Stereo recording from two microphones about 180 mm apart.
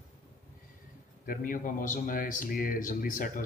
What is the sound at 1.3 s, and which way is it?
A man's voice, 50° left (ahead or behind).